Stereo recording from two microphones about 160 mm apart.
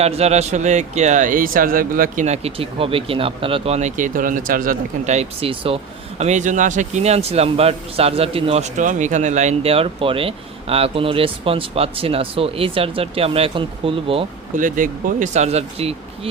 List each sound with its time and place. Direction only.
0.0 s speech: 40° right (ahead or behind); by 2.2 s 60° right (ahead or behind)
2.2 s speech: 40° right (ahead or behind)
14.5 s speech: 55° right (ahead or behind); by 16.3 s 40° right (ahead or behind)